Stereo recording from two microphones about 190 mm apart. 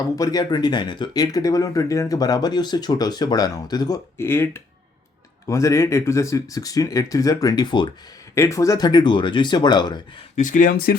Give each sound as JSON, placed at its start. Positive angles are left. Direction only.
{"t": 0.0, "sound": "speech", "side_deg": 20}
{"t": 10.3, "sound": "speech", "side_deg": 45}